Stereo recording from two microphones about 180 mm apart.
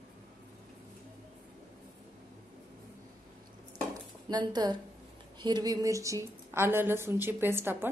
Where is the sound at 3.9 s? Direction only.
20° right (ahead or behind).